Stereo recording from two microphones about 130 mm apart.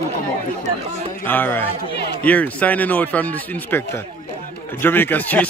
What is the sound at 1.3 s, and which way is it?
Speech, 15° left (ahead or behind).